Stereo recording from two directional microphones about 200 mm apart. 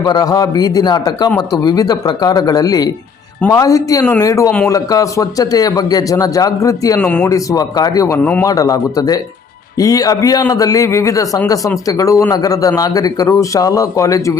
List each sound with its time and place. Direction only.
0.0 s a man's voice: 20° left (ahead or behind)
7.1 s a man's voice: 5° left (ahead or behind)
7.3 s a man's voice: 15° left (ahead or behind)